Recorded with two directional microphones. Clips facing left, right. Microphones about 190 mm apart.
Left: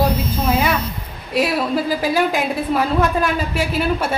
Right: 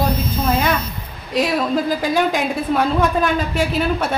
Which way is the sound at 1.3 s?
5° left (ahead or behind).